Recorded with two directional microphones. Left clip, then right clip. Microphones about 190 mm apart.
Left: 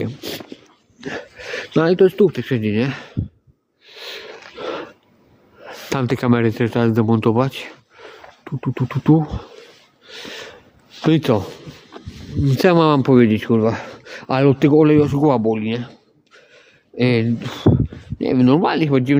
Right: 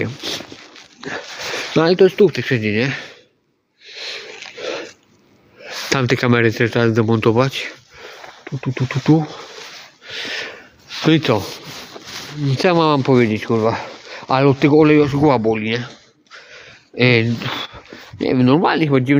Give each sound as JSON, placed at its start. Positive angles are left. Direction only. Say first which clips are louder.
{"t": 0.2, "sound": "a sound", "louder": "right 4 dB", "side_deg": 40}
{"t": 1.0, "sound": "zipper", "louder": "right 3 dB", "side_deg": 40}
{"t": 1.7, "sound": "speech", "louder": "right 1 dB", "side_deg": 20}
{"t": 3.8, "sound": "sneeze", "louder": "right 4 dB", "side_deg": 35}
{"t": 4.6, "sound": "a sound", "louder": "right 1 dB", "side_deg": 35}
{"t": 5.9, "sound": "speech", "louder": "right 3 dB", "side_deg": 10}
{"t": 8.0, "sound": "speech", "louder": "right 3 dB", "side_deg": 30}
{"t": 10.1, "sound": "gasp", "louder": "right 7 dB", "side_deg": 5}
{"t": 11.2, "sound": "speech", "louder": "right 1 dB", "side_deg": 25}
{"t": 12.0, "sound": "a sound", "louder": "right 4 dB", "side_deg": -30}
{"t": 12.5, "sound": "speech", "louder": "left 1 dB", "side_deg": 45}
{"t": 15.4, "sound": "a sound", "louder": "right 2 dB", "side_deg": 10}
{"t": 18.2, "sound": "speech", "louder": "right 1 dB", "side_deg": 10}